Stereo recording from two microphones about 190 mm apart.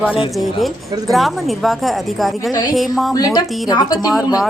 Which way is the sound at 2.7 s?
Centre (ahead or behind).